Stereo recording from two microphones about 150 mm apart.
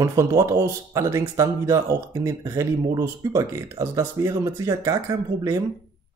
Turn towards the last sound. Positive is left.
turn(degrees=-25)  # may be behind; listen again after turning